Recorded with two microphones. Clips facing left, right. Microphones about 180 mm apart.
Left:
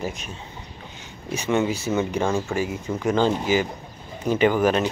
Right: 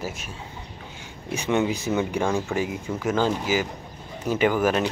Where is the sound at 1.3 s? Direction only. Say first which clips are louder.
Left 1 dB; 15° right (ahead or behind).